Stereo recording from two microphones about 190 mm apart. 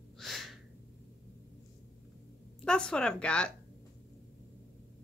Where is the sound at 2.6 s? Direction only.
5° left (ahead or behind).